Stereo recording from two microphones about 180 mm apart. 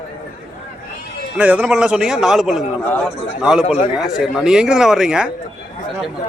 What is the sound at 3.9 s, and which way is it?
A man's voice, 5° right (ahead or behind).